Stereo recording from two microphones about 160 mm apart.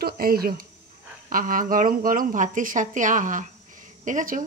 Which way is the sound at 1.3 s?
55° right (ahead or behind).